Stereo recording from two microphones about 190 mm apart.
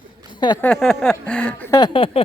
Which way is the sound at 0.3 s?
25° left (ahead or behind).